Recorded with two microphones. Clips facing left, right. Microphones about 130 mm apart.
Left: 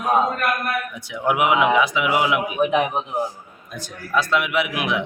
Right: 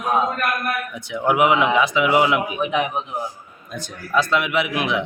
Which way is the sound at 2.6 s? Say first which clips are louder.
Left 3 dB; 45° left (ahead or behind).